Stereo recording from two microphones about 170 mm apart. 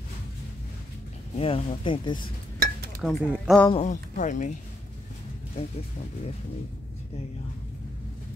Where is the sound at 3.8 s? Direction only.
50° left (ahead or behind).